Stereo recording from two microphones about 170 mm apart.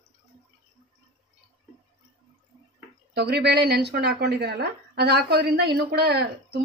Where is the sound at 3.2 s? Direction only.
70° right (ahead or behind).